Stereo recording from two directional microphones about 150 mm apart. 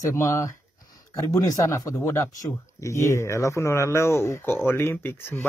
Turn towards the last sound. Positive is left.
turn(degrees=15)  # may be behind; listen again after turning